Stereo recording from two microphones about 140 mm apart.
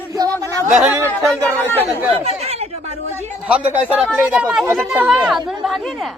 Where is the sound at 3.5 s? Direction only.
10° right (ahead or behind).